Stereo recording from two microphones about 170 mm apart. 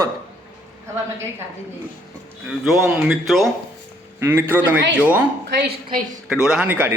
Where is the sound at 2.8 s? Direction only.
10° right (ahead or behind).